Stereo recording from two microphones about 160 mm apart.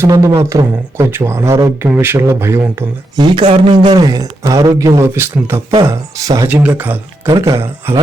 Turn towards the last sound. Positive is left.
turn(degrees=-15)  # may be behind; listen again after turning